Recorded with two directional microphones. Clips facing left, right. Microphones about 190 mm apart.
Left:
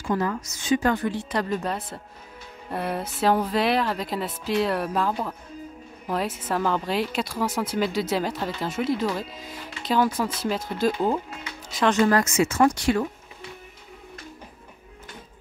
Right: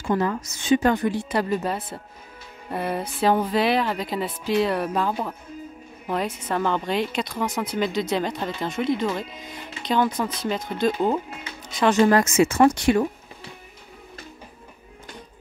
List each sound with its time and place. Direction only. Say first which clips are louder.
0.0 s a woman's voice: right 2 dB; 25° right (ahead or behind); by 12.0 s 5° right (ahead or behind)
12.0 s speech: right 4 dB; 25° right (ahead or behind)